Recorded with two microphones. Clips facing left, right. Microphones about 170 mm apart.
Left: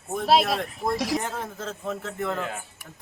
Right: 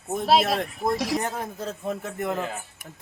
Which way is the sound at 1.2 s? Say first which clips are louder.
Right 2 dB; 15° right (ahead or behind).